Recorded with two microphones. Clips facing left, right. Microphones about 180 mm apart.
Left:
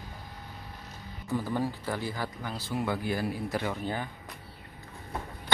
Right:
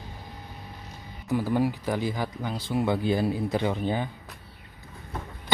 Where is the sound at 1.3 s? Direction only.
15° right (ahead or behind).